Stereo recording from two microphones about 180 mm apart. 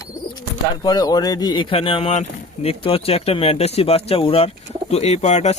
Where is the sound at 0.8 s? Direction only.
25° left (ahead or behind).